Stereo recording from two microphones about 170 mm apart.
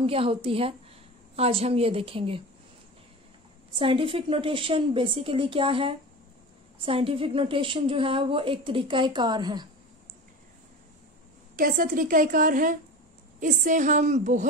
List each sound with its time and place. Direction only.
0.0 s a woman's voice: 35° right (ahead or behind)
3.7 s a woman's voice: 30° right (ahead or behind)
11.5 s a woman's voice: 55° right (ahead or behind)